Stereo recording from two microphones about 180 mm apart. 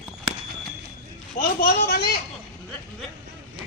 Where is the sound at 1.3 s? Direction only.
50° left (ahead or behind).